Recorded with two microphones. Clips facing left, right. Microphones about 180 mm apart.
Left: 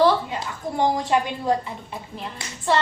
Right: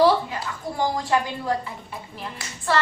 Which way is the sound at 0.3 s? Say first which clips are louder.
Left 2 dB; 20° left (ahead or behind).